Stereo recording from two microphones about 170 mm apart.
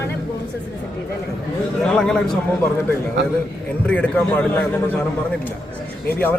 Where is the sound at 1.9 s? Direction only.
5° left (ahead or behind).